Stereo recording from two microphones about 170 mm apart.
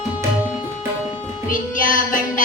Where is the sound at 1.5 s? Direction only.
50° left (ahead or behind).